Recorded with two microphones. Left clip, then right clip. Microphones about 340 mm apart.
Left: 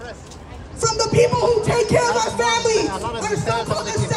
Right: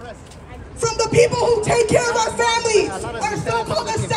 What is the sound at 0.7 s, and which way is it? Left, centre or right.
Music, centre.